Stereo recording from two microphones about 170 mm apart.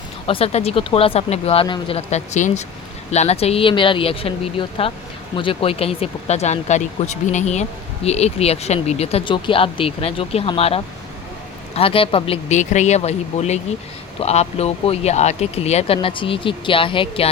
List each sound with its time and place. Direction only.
0.3 s speech: 35° left (ahead or behind)